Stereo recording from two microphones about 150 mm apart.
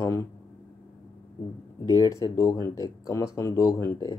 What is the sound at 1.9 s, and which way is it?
Speech, 20° left (ahead or behind).